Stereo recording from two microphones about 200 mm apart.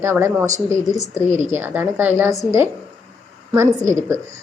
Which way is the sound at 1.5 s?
10° right (ahead or behind).